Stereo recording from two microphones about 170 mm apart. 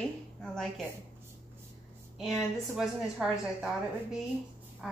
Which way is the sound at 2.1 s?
Centre (ahead or behind).